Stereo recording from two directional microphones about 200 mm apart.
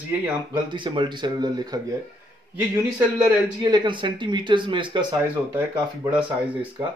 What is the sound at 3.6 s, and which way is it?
Speech, 20° right (ahead or behind).